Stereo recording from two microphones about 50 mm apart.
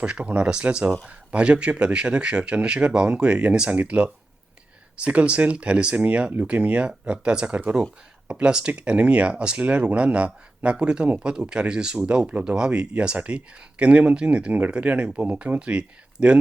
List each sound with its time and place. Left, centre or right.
0.0 s speech: right